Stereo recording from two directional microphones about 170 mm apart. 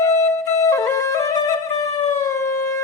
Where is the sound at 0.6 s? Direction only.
20° left (ahead or behind).